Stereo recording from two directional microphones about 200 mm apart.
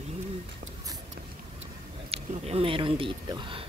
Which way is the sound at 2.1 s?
30° right (ahead or behind).